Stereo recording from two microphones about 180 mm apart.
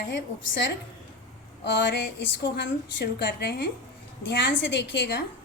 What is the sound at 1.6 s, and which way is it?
A woman's voice, 75° left (ahead or behind).